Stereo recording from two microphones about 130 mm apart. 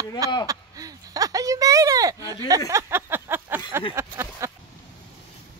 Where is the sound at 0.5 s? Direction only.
30° right (ahead or behind).